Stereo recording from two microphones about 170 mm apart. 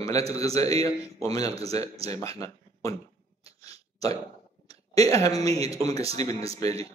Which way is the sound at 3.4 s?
35° right (ahead or behind).